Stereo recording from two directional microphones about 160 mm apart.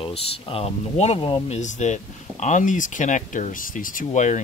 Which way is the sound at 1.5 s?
50° left (ahead or behind).